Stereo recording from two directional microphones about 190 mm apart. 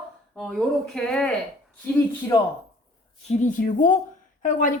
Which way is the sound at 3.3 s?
40° left (ahead or behind).